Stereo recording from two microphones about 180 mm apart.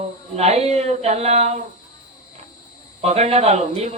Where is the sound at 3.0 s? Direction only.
35° right (ahead or behind).